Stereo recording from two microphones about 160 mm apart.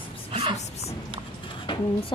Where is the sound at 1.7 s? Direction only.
30° left (ahead or behind).